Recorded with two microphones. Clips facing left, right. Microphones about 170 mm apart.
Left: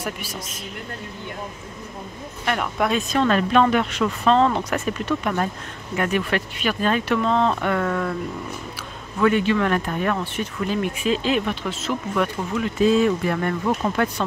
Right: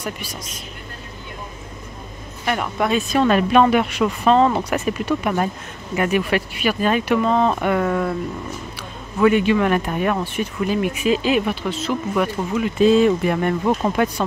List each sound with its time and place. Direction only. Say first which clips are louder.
0.0 s speech: right 1 dB; 5° left (ahead or behind)
2.4 s speech: right 1 dB; 5° right (ahead or behind)
9.2 s speech: right 3 dB; 15° right (ahead or behind)
12.7 s speech: right 4 dB; 25° right (ahead or behind)